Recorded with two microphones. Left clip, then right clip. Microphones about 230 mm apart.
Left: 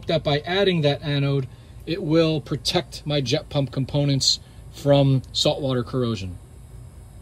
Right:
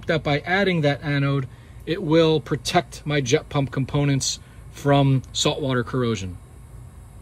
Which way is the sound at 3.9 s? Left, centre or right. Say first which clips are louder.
Even; centre.